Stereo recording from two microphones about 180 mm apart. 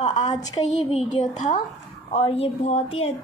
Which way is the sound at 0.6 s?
40° left (ahead or behind).